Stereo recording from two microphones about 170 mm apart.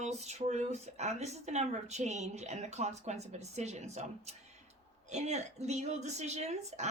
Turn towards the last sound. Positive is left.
turn(degrees=-40)  # may be behind; listen again after turning